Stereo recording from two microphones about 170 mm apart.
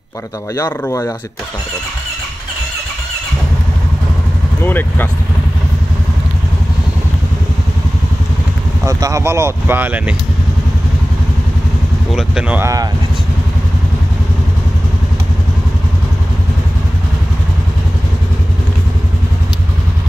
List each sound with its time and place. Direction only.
0.6 s speech: 15° left (ahead or behind)
4.6 s speech: 10° left (ahead or behind)
8.8 s speech: 20° right (ahead or behind)
12.1 s speech: 5° right (ahead or behind)